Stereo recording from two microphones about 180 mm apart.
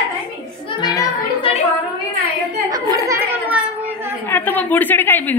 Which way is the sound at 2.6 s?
20° right (ahead or behind).